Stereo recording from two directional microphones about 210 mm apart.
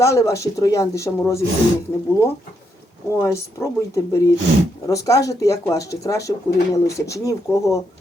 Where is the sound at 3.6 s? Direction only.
15° left (ahead or behind).